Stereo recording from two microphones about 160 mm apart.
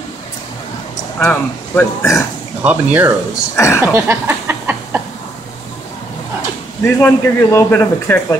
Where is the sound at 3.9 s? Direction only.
15° right (ahead or behind).